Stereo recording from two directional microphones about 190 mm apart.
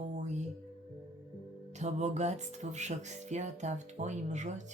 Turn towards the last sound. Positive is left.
turn(degrees=-40)  # may be behind; listen again after turning